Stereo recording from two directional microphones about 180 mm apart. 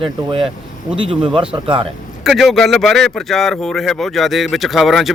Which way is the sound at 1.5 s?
30° right (ahead or behind).